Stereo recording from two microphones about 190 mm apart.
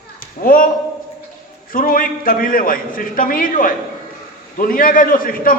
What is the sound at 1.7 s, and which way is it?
A man's voice, 45° left (ahead or behind).